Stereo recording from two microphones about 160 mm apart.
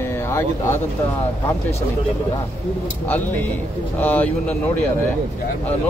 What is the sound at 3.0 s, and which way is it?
Speech, 10° left (ahead or behind).